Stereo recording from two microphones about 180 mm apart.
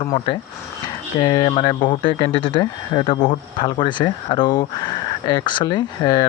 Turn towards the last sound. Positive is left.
turn(degrees=20)  # may be behind; listen again after turning